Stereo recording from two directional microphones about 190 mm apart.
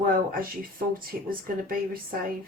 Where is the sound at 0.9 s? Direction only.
50° right (ahead or behind).